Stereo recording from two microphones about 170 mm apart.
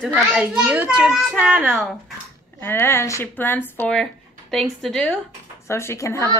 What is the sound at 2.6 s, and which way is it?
A woman's voice, 15° left (ahead or behind).